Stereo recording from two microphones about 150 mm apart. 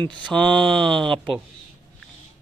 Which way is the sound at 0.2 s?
5° left (ahead or behind).